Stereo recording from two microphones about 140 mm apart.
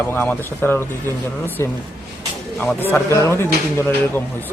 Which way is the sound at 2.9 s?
20° left (ahead or behind).